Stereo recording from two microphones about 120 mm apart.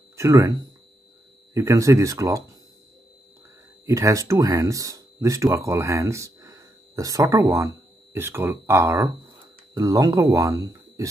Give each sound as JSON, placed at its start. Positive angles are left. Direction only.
{"t": 0.1, "sound": "speech", "side_deg": -25}
{"t": 3.8, "sound": "speech", "side_deg": -25}